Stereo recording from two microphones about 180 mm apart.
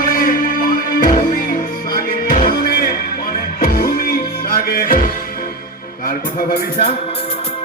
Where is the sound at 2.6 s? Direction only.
55° left (ahead or behind).